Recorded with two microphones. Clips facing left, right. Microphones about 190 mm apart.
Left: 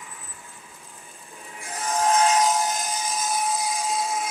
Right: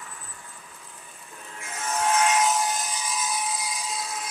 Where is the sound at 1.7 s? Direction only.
35° left (ahead or behind).